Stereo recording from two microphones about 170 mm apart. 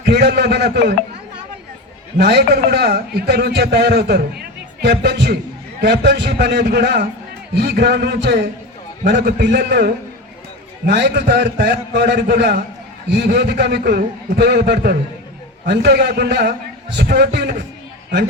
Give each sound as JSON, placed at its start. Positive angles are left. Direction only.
{"t": 0.0, "sound": "a man's voice", "side_deg": -75}
{"t": 2.1, "sound": "a man's voice", "side_deg": -70}
{"t": 9.0, "sound": "a man's voice", "side_deg": -90}
{"t": 13.1, "sound": "a man's voice", "side_deg": -85}
{"t": 15.6, "sound": "a man's voice", "side_deg": -80}